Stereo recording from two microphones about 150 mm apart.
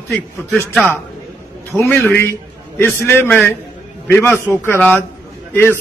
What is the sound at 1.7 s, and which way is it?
A man's voice, 10° left (ahead or behind).